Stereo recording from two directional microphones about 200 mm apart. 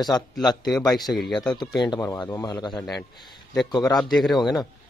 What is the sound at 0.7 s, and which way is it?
Speech, centre (ahead or behind).